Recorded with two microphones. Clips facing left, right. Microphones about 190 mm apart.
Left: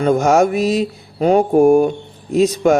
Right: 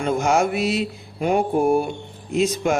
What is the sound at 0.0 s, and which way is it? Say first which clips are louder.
Mantra: left 6 dB; 40° left (ahead or behind).